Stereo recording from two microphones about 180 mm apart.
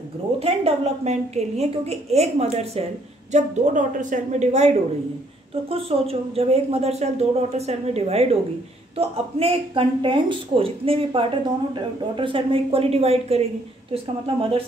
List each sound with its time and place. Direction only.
0.4 s a woman's voice: 35° right (ahead or behind)